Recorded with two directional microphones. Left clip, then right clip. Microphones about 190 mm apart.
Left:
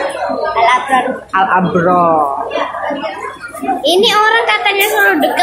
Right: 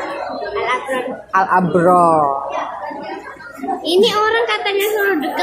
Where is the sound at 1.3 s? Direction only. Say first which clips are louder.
Left 2 dB; 35° right (ahead or behind).